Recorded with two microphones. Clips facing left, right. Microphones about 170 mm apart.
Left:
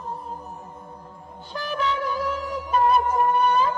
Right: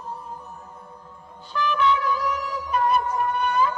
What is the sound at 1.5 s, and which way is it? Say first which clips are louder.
Music: right 4 dB; 40° left (ahead or behind).